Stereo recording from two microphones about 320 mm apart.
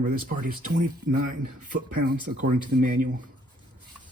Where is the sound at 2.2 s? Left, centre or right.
Right.